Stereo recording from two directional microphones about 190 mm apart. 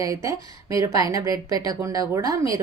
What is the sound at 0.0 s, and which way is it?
A woman's voice, 20° right (ahead or behind).